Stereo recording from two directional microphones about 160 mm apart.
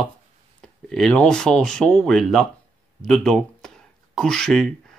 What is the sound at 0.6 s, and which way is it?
Speech, 5° left (ahead or behind).